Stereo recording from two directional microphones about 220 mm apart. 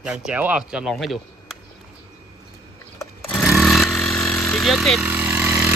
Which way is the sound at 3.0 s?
10° left (ahead or behind).